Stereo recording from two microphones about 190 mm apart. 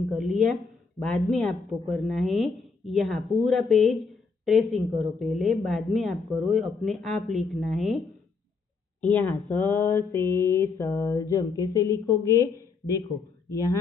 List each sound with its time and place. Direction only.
0.1 s a woman's voice: centre (ahead or behind)
9.1 s speech: 10° left (ahead or behind)